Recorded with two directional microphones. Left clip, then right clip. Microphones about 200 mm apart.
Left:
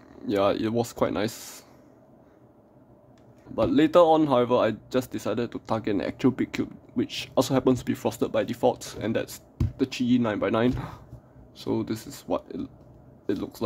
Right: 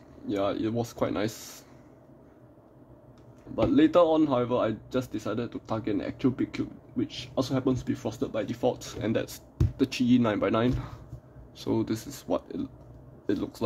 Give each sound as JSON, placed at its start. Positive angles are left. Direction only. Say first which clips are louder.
{"t": 0.3, "sound": "speech", "louder": "left 5 dB", "side_deg": 25}
{"t": 3.6, "sound": "speech", "louder": "left 3 dB", "side_deg": 15}